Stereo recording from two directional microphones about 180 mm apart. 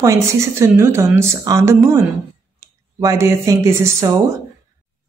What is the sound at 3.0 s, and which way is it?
Speech, 15° right (ahead or behind).